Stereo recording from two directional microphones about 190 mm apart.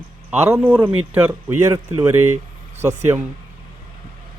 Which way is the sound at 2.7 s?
35° right (ahead or behind).